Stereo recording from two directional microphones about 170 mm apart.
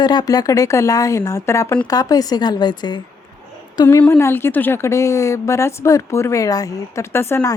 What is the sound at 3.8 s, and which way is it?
A woman's voice, 10° left (ahead or behind).